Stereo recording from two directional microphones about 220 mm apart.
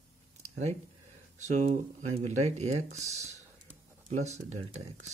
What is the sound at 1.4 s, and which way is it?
Speech, 30° right (ahead or behind).